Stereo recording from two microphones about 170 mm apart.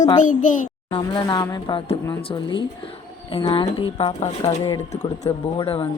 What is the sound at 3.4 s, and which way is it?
Speech, 30° left (ahead or behind).